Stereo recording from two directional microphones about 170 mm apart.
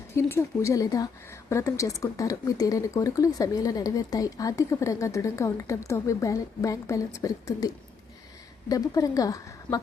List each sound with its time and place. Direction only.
0.2 s a woman's voice: 15° left (ahead or behind)
8.7 s a woman's voice: 20° left (ahead or behind)